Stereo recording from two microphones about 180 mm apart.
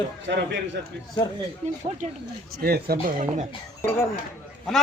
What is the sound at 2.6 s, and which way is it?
Speech, 60° right (ahead or behind).